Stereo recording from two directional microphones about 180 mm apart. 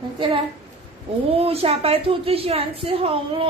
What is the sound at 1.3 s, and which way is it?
A woman's voice, 35° right (ahead or behind).